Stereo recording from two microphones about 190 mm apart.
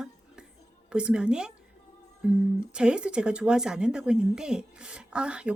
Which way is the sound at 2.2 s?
5° right (ahead or behind).